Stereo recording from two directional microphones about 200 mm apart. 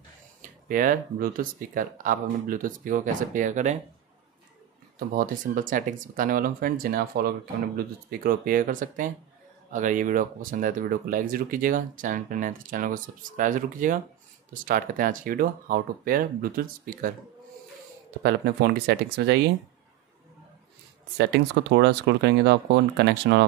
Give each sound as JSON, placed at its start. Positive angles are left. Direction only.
{"t": 0.4, "sound": "speech", "side_deg": -40}
{"t": 4.9, "sound": "speech", "side_deg": -45}
{"t": 18.2, "sound": "speech", "side_deg": -55}
{"t": 21.2, "sound": "speech", "side_deg": -60}